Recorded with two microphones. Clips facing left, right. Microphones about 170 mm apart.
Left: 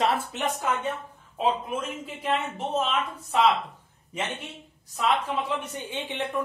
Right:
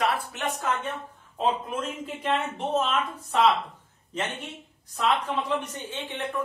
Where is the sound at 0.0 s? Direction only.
25° left (ahead or behind).